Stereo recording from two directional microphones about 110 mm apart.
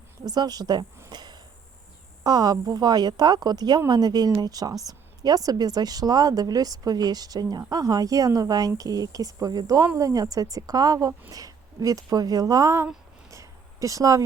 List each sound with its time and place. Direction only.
0.3 s a woman's voice: 40° right (ahead or behind)
1.1 s insect: 40° right (ahead or behind)
2.2 s a woman's voice: 35° right (ahead or behind)
13.3 s a sound: 30° right (ahead or behind)